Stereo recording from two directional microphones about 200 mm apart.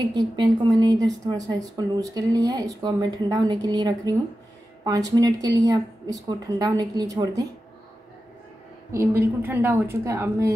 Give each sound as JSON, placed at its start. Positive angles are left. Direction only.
{"t": 0.0, "sound": "a woman's voice", "side_deg": -20}
{"t": 8.9, "sound": "a woman's voice", "side_deg": -15}